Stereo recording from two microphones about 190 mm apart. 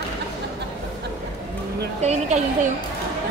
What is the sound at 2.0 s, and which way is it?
Speech, 40° right (ahead or behind).